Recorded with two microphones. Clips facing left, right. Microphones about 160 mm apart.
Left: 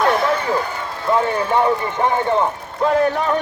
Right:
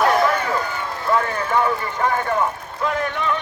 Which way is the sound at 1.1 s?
25° left (ahead or behind).